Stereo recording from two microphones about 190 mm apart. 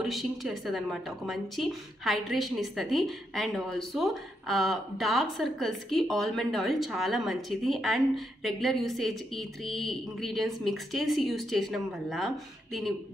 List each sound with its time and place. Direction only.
0.0 s a woman's voice: centre (ahead or behind)